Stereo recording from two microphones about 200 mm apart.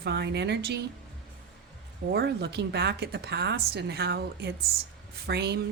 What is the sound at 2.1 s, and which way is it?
A woman's voice, 55° right (ahead or behind).